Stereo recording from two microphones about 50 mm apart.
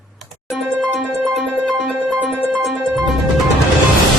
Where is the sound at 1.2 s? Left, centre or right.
Right.